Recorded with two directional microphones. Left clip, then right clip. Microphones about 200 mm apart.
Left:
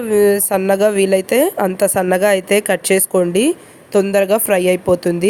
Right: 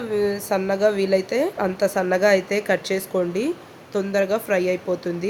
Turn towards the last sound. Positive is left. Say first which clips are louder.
# left 10 dB
turn(degrees=40)  # may be behind; listen again after turning